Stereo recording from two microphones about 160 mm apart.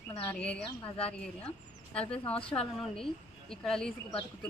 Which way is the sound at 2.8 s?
5° left (ahead or behind).